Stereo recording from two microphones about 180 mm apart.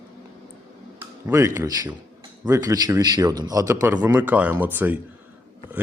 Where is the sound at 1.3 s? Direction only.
15° right (ahead or behind).